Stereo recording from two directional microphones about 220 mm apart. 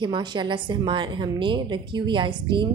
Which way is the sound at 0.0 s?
20° right (ahead or behind).